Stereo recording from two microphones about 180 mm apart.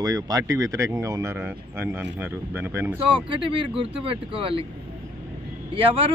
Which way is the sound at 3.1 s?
30° right (ahead or behind).